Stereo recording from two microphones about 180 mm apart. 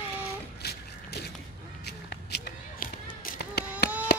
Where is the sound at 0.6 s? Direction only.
65° left (ahead or behind).